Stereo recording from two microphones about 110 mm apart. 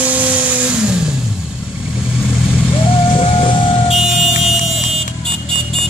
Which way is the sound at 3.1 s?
50° left (ahead or behind).